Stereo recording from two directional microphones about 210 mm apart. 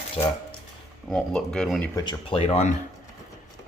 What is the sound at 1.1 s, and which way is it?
Speech, 5° left (ahead or behind).